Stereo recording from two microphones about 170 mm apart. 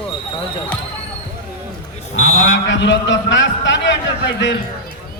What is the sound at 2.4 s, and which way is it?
A man's voice, 90° left.